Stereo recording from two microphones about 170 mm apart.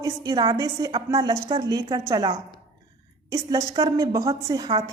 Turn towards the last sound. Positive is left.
turn(degrees=-25)  # may be behind; listen again after turning